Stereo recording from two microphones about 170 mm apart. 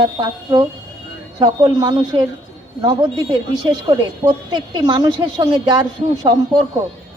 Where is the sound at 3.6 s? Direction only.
25° right (ahead or behind).